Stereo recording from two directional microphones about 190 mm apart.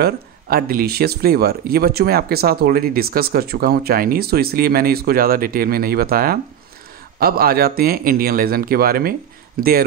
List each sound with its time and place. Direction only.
0.0 s speech: 55° right (ahead or behind)